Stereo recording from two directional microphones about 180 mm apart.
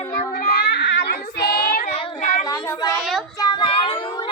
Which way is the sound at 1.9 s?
30° left (ahead or behind).